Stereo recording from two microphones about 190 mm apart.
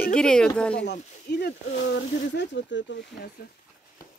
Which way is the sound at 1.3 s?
60° left (ahead or behind).